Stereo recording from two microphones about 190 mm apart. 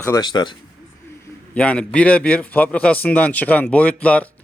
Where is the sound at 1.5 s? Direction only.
5° left (ahead or behind).